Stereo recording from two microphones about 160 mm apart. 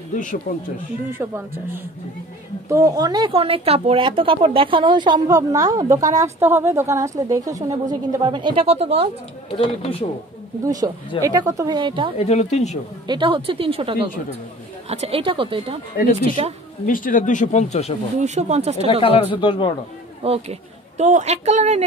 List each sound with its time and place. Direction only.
0.1 s speech: 55° left (ahead or behind)
1.1 s speech: 15° right (ahead or behind); by 9.1 s 40° right (ahead or behind)
9.5 s speech: 35° left (ahead or behind)
10.6 s speech: 20° right (ahead or behind)
12.2 s speech: 45° left (ahead or behind)
13.0 s a woman's voice: 30° right (ahead or behind)
16.0 s speech: 60° left (ahead or behind); by 17.9 s 45° left (ahead or behind)
18.2 s speech: 45° right (ahead or behind)
18.9 s speech: 35° left (ahead or behind)
20.2 s a woman's voice: 35° right (ahead or behind)